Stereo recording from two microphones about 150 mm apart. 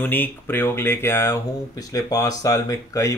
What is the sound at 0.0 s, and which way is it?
Speech, 15° left (ahead or behind).